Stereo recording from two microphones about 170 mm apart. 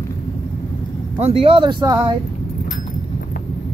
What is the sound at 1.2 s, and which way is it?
Speech, 35° right (ahead or behind).